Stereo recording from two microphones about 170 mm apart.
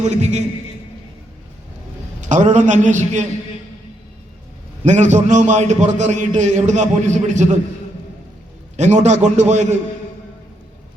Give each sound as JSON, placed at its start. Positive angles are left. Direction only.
{"t": 0.0, "sound": "a man's voice", "side_deg": -45}
{"t": 2.3, "sound": "a man's voice", "side_deg": -45}
{"t": 4.9, "sound": "a man's voice", "side_deg": -45}
{"t": 8.7, "sound": "a man's voice", "side_deg": -45}